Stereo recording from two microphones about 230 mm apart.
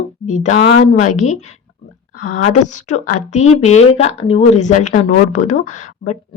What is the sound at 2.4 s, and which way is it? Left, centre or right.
A woman's voice, left.